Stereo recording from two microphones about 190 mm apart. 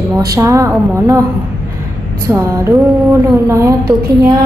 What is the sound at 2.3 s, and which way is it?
Speech, 10° right (ahead or behind).